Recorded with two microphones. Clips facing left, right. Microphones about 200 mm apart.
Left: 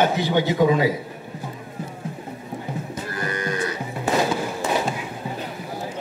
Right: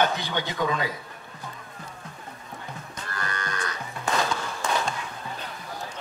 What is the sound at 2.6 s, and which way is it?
Cattle, 15° left (ahead or behind).